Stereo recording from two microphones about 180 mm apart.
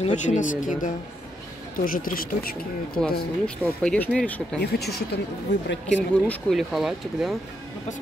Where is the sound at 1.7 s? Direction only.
50° left (ahead or behind).